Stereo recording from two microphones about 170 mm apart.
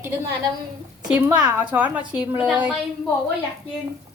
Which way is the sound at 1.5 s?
10° right (ahead or behind).